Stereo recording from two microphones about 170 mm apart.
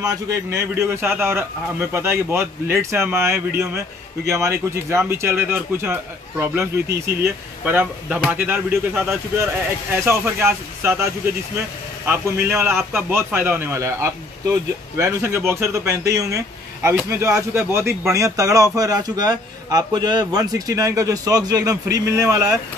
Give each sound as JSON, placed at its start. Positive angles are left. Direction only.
{"t": 0.0, "sound": "speech", "side_deg": -20}
{"t": 10.0, "sound": "speech", "side_deg": -15}
{"t": 12.1, "sound": "speech", "side_deg": -15}